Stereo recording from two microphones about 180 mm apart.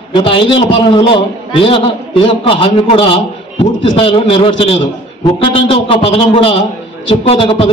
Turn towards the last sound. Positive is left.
turn(degrees=30)  # may be behind; listen again after turning